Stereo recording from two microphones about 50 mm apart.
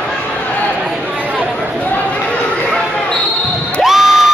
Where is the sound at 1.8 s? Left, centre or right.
Left.